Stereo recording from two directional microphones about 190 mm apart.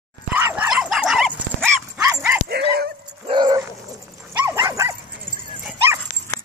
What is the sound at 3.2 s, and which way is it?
Dog, 25° right (ahead or behind).